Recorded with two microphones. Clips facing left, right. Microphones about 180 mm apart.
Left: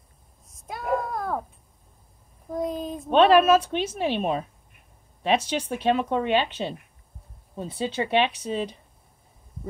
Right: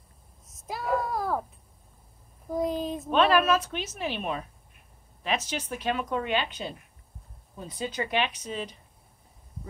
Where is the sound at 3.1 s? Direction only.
30° left (ahead or behind).